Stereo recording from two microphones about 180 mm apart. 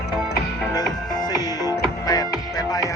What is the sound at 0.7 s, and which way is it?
Music, 20° left (ahead or behind).